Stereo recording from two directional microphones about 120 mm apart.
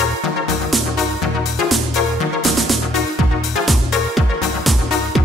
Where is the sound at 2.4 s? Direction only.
Centre (ahead or behind).